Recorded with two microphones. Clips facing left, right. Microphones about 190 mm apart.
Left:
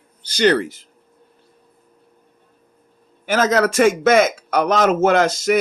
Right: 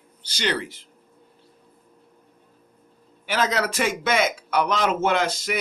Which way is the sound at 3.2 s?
45° left (ahead or behind).